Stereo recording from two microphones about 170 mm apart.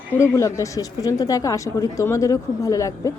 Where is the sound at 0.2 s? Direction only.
20° left (ahead or behind).